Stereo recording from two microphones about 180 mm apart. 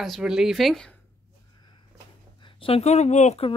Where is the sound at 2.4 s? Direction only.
30° left (ahead or behind).